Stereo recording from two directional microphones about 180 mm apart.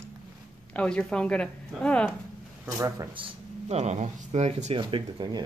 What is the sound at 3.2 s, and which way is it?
Speech, 35° right (ahead or behind).